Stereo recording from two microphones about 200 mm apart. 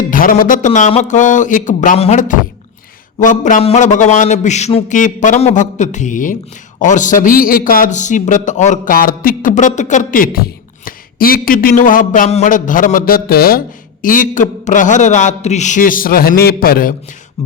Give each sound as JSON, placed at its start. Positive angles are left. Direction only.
{"t": 0.1, "sound": "a man's voice", "side_deg": 45}